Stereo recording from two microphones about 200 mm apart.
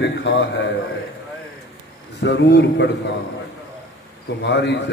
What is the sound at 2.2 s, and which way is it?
Speech, 60° left (ahead or behind).